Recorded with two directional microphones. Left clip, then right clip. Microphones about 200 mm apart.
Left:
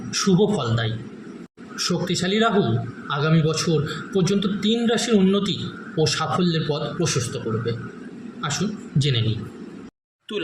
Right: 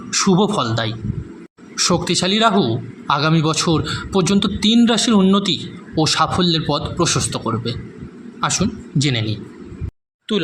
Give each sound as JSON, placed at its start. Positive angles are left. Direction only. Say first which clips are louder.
{"t": 0.1, "sound": "a man's voice", "louder": "right 3 dB", "side_deg": -40}